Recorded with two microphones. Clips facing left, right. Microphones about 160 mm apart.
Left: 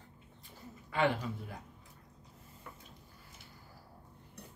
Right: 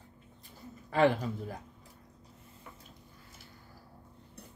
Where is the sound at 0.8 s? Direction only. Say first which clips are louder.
Right 5 dB; 40° right (ahead or behind).